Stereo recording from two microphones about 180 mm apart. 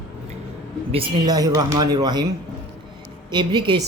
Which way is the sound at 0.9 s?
25° right (ahead or behind).